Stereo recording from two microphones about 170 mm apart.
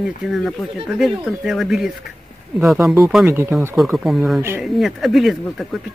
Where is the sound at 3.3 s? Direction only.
15° right (ahead or behind).